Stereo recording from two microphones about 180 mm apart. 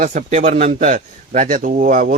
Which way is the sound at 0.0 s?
45° right (ahead or behind).